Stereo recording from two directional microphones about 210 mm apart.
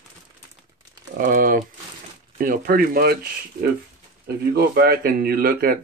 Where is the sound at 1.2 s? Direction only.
40° right (ahead or behind).